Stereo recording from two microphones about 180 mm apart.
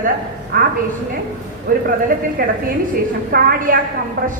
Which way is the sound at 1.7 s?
50° right (ahead or behind).